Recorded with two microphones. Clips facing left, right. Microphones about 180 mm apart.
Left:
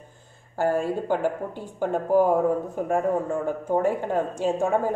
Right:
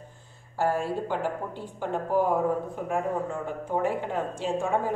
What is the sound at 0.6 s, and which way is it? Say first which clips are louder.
Speech: left 3 dB; 45° left (ahead or behind).